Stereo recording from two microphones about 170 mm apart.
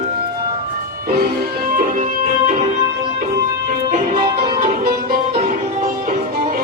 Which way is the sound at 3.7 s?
55° right (ahead or behind).